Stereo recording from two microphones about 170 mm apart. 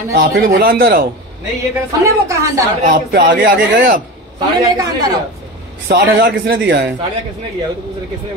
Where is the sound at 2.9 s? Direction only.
60° right (ahead or behind).